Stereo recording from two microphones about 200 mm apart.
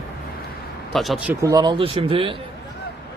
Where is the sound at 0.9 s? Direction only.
Centre (ahead or behind); by 2.4 s 25° right (ahead or behind).